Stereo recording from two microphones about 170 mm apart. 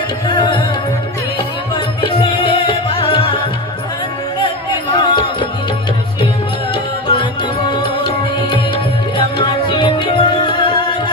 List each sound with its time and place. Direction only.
0.3 s music: 30° left (ahead or behind)
2.0 s music: 30° left (ahead or behind)
6.7 s music: 30° left (ahead or behind)
9.1 s music: 30° left (ahead or behind)